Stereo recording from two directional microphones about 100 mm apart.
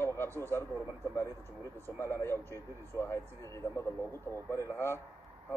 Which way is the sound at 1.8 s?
25° left (ahead or behind).